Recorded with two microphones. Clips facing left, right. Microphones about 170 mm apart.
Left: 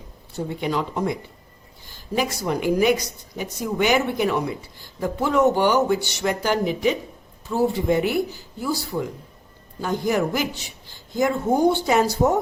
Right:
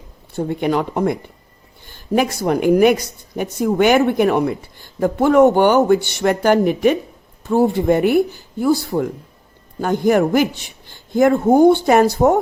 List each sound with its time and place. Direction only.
0.3 s a man's voice: 55° right (ahead or behind)